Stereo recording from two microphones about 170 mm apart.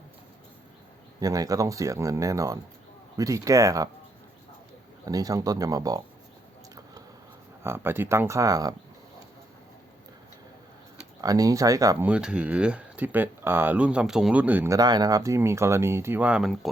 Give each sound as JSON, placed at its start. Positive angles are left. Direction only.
{"t": 1.2, "sound": "speech", "side_deg": -20}
{"t": 5.0, "sound": "speech", "side_deg": -20}
{"t": 7.6, "sound": "speech", "side_deg": -15}
{"t": 11.2, "sound": "speech", "side_deg": -20}
{"t": 12.0, "sound": "speech", "side_deg": -5}